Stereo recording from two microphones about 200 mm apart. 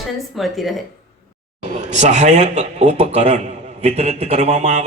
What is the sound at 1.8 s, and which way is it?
A man's voice, 35° right (ahead or behind).